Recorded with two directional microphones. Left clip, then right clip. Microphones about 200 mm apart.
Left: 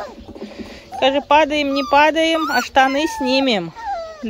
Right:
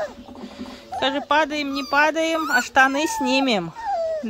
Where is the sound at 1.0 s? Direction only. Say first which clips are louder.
Left 6 dB; 5° left (ahead or behind).